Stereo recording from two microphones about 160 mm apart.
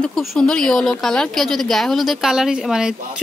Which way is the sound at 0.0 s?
Centre (ahead or behind).